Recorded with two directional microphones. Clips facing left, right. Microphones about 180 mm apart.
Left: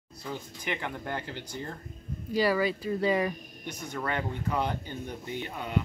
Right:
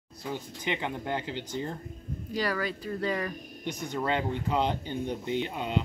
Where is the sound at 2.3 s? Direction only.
5° left (ahead or behind).